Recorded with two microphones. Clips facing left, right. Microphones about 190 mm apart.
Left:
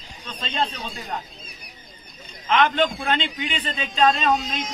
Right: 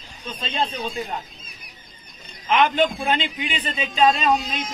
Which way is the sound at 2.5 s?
15° right (ahead or behind).